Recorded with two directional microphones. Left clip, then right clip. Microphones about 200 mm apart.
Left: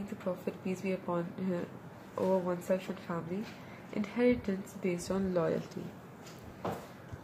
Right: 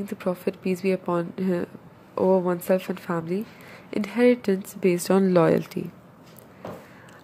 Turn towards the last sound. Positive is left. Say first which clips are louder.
# right 13 dB
turn(degrees=-50)  # may be behind; listen again after turning